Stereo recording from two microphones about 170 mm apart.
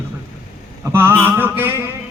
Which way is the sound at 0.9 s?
15° right (ahead or behind).